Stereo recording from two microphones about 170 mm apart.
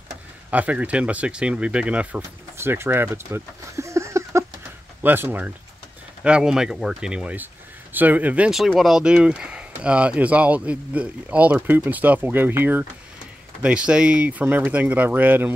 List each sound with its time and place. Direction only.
0.5 s speech: 10° right (ahead or behind)